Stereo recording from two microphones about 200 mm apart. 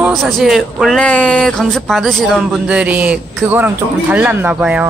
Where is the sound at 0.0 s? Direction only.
Centre (ahead or behind).